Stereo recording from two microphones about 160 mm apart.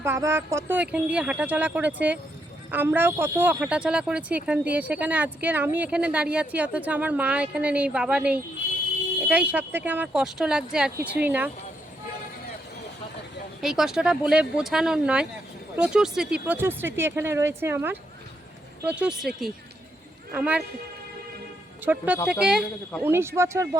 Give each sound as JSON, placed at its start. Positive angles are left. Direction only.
{"t": 0.0, "sound": "speech", "side_deg": -15}
{"t": 13.6, "sound": "speech", "side_deg": 0}
{"t": 21.8, "sound": "speech", "side_deg": -10}